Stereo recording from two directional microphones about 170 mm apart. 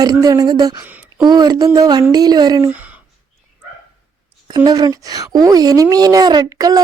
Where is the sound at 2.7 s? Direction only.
10° right (ahead or behind).